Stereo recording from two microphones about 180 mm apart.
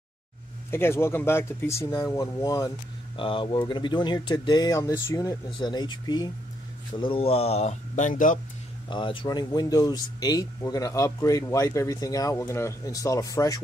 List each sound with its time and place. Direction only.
0.7 s speech: 15° left (ahead or behind); by 8.4 s 45° left (ahead or behind)
8.9 s speech: 25° left (ahead or behind)